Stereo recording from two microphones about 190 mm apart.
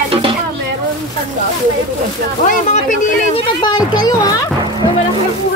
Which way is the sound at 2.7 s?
40° left (ahead or behind).